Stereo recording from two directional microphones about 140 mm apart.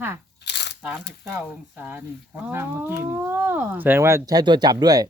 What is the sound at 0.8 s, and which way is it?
Speech, 5° right (ahead or behind).